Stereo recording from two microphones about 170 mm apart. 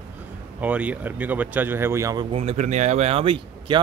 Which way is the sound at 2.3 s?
40° right (ahead or behind).